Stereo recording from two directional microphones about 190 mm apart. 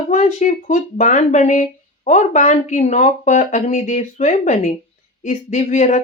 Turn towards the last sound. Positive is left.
turn(degrees=40)  # may be behind; listen again after turning